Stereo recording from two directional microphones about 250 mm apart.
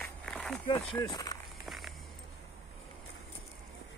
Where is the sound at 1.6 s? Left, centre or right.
Centre.